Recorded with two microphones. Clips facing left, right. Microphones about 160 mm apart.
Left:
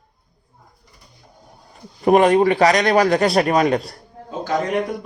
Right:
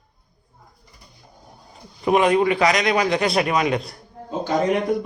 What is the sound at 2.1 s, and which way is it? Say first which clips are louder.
A man's voice: left 4 dB; 40° left (ahead or behind).